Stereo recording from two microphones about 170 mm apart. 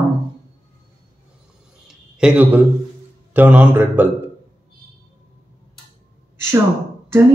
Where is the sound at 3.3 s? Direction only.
10° right (ahead or behind).